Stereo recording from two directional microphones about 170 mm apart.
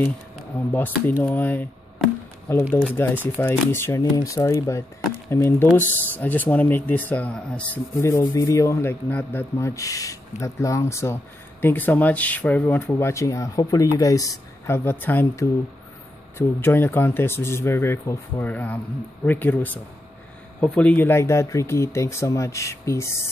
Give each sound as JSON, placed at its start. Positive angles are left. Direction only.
{"t": 0.7, "sound": "speech", "side_deg": 10}